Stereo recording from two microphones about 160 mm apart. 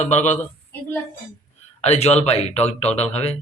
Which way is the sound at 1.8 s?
40° left (ahead or behind).